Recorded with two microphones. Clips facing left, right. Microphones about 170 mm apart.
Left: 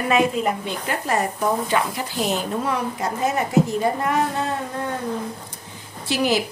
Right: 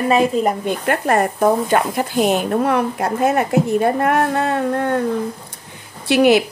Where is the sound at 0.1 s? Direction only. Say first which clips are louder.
Right 3 dB; 40° right (ahead or behind).